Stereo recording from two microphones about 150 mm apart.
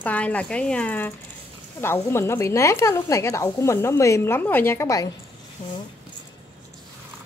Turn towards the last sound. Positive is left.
turn(degrees=60)  # may be behind; listen again after turning